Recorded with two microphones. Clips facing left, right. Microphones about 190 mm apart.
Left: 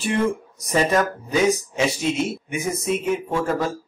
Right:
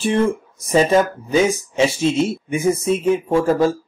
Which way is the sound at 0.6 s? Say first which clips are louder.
Right 5 dB; 25° right (ahead or behind).